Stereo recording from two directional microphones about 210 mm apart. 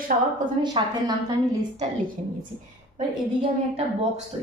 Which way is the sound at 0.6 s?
20° right (ahead or behind).